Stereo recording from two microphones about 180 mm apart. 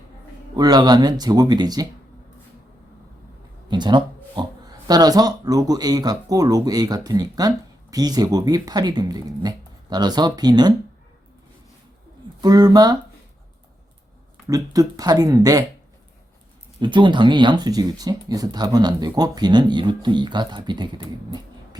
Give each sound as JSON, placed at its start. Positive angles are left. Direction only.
{"t": 0.5, "sound": "speech", "side_deg": -20}
{"t": 3.7, "sound": "speech", "side_deg": -25}
{"t": 12.4, "sound": "speech", "side_deg": -20}
{"t": 14.4, "sound": "speech", "side_deg": -20}
{"t": 16.8, "sound": "speech", "side_deg": -25}